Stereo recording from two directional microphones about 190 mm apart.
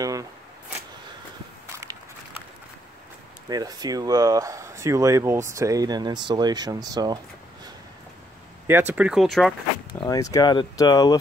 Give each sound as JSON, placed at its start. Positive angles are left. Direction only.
{"t": 0.0, "sound": "shuffling cards", "side_deg": -15}
{"t": 3.4, "sound": "speech", "side_deg": -20}
{"t": 8.6, "sound": "speech", "side_deg": -10}
{"t": 9.9, "sound": "speech", "side_deg": 20}